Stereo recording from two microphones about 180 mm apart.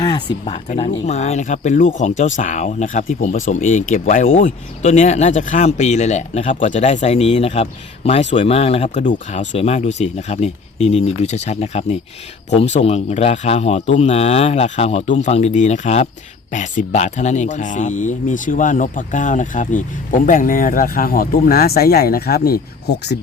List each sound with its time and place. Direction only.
1.0 s speech: 40° left (ahead or behind); by 23.1 s 60° left (ahead or behind)